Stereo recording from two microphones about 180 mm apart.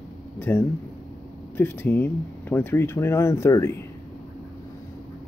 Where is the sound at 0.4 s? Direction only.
10° left (ahead or behind).